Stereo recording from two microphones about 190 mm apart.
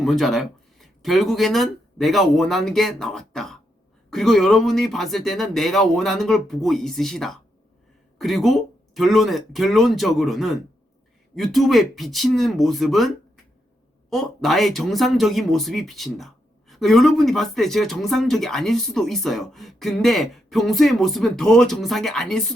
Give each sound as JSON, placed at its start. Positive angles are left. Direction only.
{"t": 0.0, "sound": "speech", "side_deg": 0}